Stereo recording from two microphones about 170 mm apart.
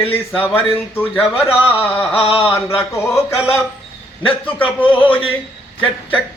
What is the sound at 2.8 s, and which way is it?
Speech, 15° left (ahead or behind).